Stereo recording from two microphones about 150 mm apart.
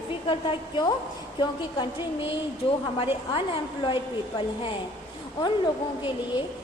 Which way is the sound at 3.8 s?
35° left (ahead or behind).